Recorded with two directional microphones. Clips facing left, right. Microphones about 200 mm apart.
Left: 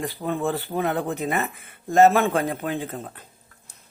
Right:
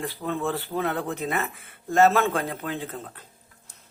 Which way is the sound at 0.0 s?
15° left (ahead or behind).